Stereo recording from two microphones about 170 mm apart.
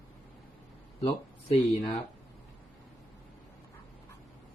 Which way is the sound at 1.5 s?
35° left (ahead or behind).